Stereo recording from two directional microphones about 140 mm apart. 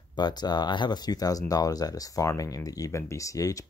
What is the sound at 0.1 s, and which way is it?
Speech, 30° left (ahead or behind).